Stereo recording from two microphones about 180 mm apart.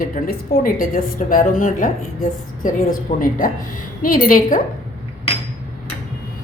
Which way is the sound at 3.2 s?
50° left (ahead or behind).